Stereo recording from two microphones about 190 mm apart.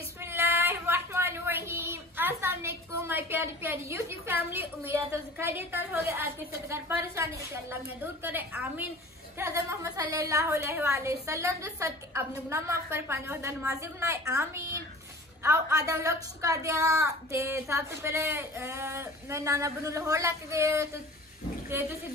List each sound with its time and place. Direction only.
0.2 s a woman's voice: 15° right (ahead or behind)